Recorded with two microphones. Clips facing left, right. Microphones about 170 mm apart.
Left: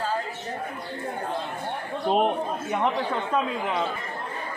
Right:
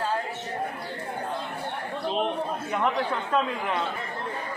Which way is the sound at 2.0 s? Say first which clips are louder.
Left 5 dB; 50° left (ahead or behind).